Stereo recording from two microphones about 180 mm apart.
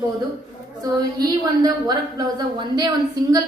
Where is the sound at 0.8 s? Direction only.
20° right (ahead or behind).